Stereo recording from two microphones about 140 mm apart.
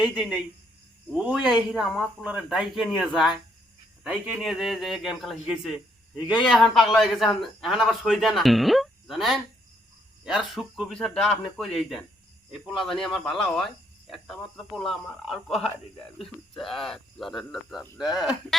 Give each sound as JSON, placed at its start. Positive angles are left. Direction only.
{"t": 0.0, "sound": "a man's voice", "side_deg": 0}